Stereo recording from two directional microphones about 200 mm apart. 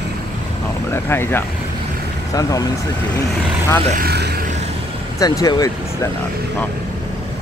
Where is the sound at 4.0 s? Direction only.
55° right (ahead or behind).